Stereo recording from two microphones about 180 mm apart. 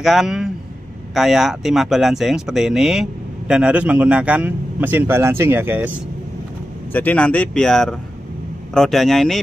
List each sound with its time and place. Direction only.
0.0 s speech: centre (ahead or behind)
6.9 s speech: 10° left (ahead or behind)